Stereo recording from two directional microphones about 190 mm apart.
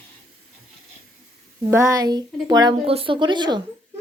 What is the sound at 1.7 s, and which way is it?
A woman's voice, 15° right (ahead or behind).